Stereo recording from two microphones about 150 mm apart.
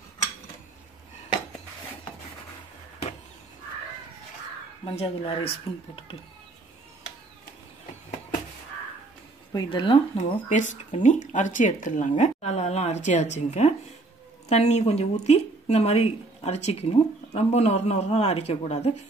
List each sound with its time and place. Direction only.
4.8 s speech: 40° left (ahead or behind)
9.5 s speech: 30° left (ahead or behind)
10.5 s speech: 55° left (ahead or behind)